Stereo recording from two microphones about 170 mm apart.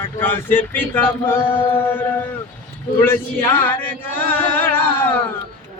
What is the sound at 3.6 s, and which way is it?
Chant, 10° left (ahead or behind).